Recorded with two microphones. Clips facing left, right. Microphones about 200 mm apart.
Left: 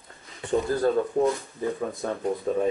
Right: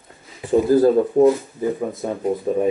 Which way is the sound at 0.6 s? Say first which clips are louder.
Right 10 dB; centre (ahead or behind).